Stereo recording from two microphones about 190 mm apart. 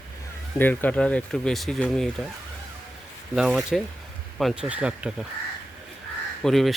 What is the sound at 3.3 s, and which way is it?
Speech, centre (ahead or behind).